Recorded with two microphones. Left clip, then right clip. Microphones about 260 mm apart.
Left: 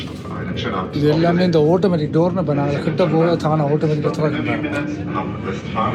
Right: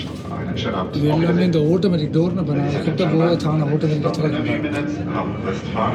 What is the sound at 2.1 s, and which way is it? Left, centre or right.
Speech, centre.